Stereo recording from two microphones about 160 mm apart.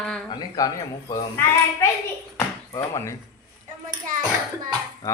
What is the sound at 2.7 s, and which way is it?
Speech, 20° left (ahead or behind).